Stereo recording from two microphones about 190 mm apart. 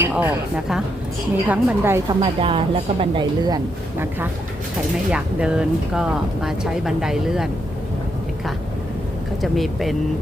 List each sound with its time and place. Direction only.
0.0 s speech: 10° right (ahead or behind)
2.2 s speech: 25° right (ahead or behind)
5.1 s speech: 5° right (ahead or behind)
9.4 s speech: centre (ahead or behind)